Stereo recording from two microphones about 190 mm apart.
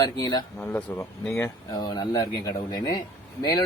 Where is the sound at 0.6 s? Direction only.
10° left (ahead or behind).